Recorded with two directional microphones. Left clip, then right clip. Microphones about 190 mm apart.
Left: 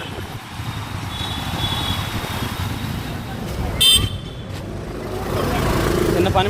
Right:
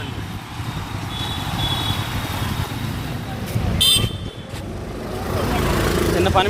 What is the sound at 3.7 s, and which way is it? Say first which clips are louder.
Vehicle: left 2 dB; centre (ahead or behind).